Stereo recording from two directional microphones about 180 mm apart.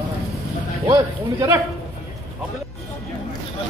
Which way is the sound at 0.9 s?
20° right (ahead or behind).